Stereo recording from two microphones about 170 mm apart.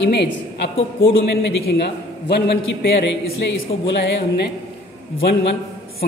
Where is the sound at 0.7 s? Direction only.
35° left (ahead or behind).